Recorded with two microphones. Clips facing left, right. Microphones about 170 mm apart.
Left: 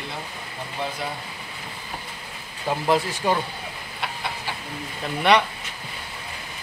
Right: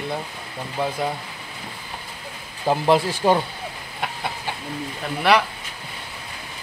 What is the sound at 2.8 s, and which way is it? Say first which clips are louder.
Speech: right 3 dB; 30° right (ahead or behind).